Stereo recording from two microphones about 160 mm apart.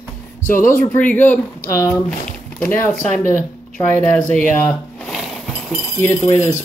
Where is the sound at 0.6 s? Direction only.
10° left (ahead or behind).